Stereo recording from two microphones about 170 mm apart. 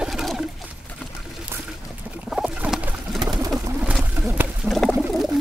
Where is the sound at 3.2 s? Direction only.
20° right (ahead or behind).